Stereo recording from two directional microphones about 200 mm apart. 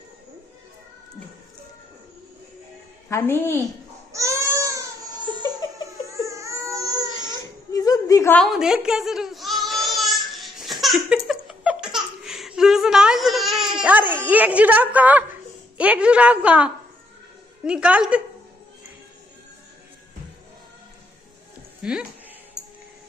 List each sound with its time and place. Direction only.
3.1 s a woman's voice: 10° left (ahead or behind)
4.1 s baby cry: 15° right (ahead or behind)
7.7 s a sound: 15° left (ahead or behind); by 15.2 s 10° right (ahead or behind)
15.8 s a woman's voice: 5° right (ahead or behind)
21.8 s speech: 5° right (ahead or behind)